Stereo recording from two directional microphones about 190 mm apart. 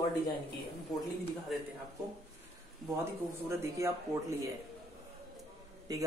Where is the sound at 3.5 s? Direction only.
15° right (ahead or behind).